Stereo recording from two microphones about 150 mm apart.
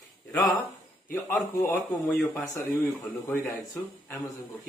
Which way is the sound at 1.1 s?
15° left (ahead or behind).